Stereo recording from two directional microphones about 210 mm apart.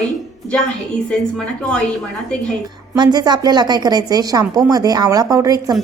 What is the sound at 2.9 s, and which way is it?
A woman's voice, 20° right (ahead or behind).